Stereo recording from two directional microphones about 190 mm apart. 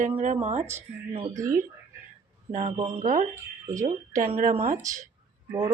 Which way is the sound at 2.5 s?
30° right (ahead or behind).